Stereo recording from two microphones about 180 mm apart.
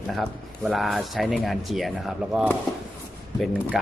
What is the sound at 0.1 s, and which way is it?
Speech, centre (ahead or behind).